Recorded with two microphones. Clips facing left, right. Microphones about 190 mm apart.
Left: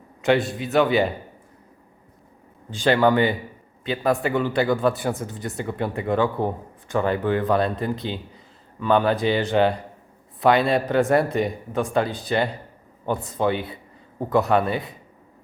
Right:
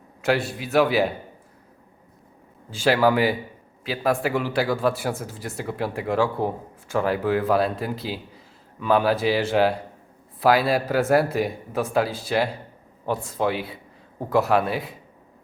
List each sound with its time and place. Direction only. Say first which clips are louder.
0.2 s a man's voice: left 3 dB; centre (ahead or behind)
2.6 s a man's voice: left 1 dB; 5° right (ahead or behind)